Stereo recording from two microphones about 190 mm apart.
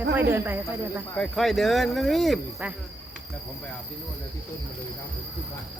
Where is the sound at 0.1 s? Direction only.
10° right (ahead or behind).